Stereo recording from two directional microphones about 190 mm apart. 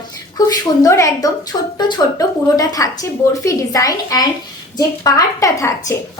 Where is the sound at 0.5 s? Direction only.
15° left (ahead or behind).